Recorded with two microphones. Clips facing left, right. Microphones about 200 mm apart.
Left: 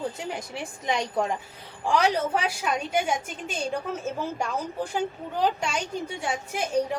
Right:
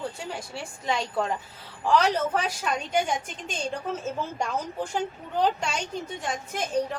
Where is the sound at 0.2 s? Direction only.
20° left (ahead or behind).